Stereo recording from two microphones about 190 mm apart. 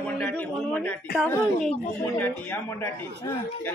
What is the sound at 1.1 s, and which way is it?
Speech, 5° left (ahead or behind).